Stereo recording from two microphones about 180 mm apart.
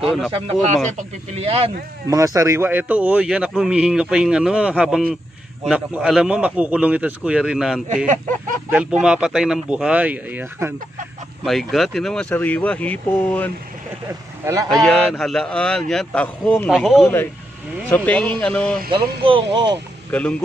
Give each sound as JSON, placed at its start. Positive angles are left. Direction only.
{"t": 0.9, "sound": "speech", "side_deg": -35}
{"t": 2.0, "sound": "a man's voice", "side_deg": -20}
{"t": 8.1, "sound": "a sound", "side_deg": -45}
{"t": 8.6, "sound": "a man's voice", "side_deg": -5}
{"t": 11.4, "sound": "speech", "side_deg": 0}
{"t": 14.4, "sound": "speech", "side_deg": -20}
{"t": 14.7, "sound": "a man's voice", "side_deg": 0}
{"t": 17.8, "sound": "a man's voice", "side_deg": 10}
{"t": 18.9, "sound": "speech", "side_deg": -30}
{"t": 20.1, "sound": "a man's voice", "side_deg": 5}